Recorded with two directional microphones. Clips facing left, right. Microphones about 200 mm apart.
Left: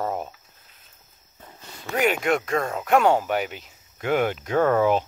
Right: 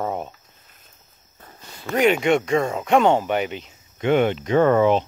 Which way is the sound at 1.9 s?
Centre (ahead or behind).